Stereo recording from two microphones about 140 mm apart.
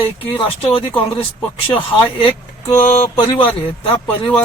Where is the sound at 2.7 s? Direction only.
65° left (ahead or behind).